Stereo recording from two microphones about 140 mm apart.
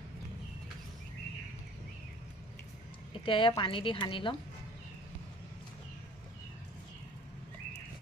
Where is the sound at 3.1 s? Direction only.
40° left (ahead or behind).